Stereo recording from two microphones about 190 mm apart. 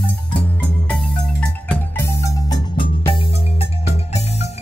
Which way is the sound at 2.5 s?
20° left (ahead or behind).